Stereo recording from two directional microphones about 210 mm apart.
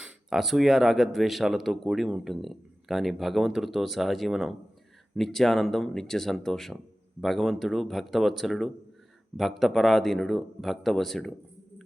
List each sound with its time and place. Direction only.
0.0 s speech: centre (ahead or behind)